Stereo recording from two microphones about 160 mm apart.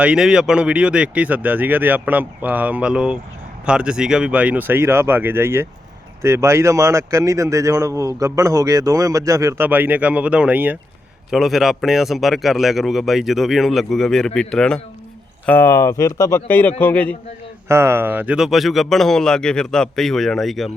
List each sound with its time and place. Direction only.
0.0 s speech: 5° right (ahead or behind)
17.7 s speech: 15° right (ahead or behind); by 20.7 s centre (ahead or behind)